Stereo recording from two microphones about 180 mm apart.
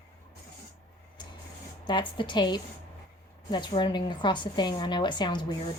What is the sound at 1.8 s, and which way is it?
A woman's voice, 25° left (ahead or behind).